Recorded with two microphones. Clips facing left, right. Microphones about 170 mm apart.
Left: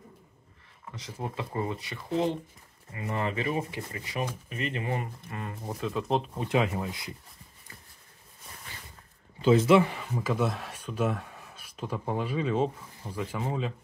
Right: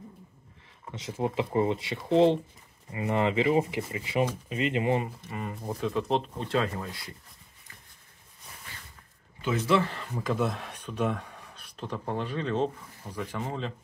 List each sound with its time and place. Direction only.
0.9 s speech: 25° right (ahead or behind)
5.3 s speech: 5° right (ahead or behind); by 7.1 s 15° left (ahead or behind)
9.4 s speech: 25° left (ahead or behind); by 13.7 s 5° left (ahead or behind)